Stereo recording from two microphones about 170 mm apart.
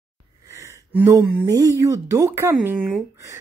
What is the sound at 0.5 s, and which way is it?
Speech, 15° right (ahead or behind).